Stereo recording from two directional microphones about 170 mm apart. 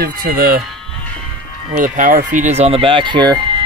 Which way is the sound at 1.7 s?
50° right (ahead or behind).